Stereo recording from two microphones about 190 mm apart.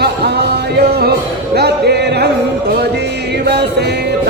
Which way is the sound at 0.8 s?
55° right (ahead or behind).